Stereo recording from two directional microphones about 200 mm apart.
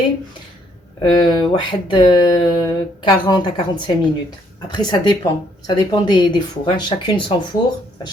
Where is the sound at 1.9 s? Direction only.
20° left (ahead or behind).